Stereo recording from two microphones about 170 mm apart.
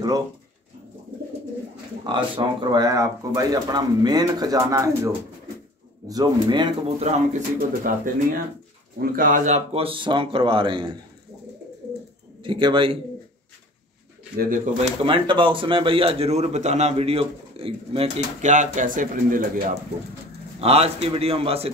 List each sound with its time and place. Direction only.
2.1 s speech: 25° right (ahead or behind)
7.1 s speech: 40° right (ahead or behind)
7.5 s speech: 55° right (ahead or behind); by 11.0 s 30° right (ahead or behind)
12.4 s speech: 30° right (ahead or behind)
14.3 s speech: 60° right (ahead or behind)
14.8 s speech: 30° right (ahead or behind); by 19.8 s 50° right (ahead or behind)
20.6 s speech: 35° right (ahead or behind)